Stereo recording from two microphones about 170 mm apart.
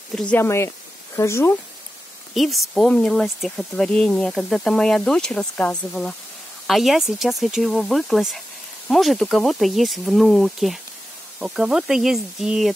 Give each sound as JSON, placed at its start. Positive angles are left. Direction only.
{"t": 0.1, "sound": "speech", "side_deg": 5}
{"t": 2.3, "sound": "speech", "side_deg": 0}